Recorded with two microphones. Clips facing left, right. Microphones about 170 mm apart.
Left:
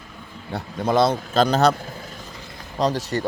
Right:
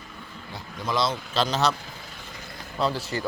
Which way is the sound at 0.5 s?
55° left (ahead or behind).